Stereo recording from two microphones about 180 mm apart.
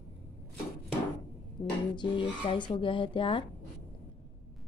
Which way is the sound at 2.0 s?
25° left (ahead or behind).